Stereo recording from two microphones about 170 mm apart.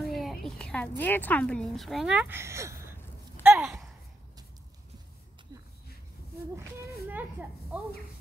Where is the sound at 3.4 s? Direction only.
10° right (ahead or behind).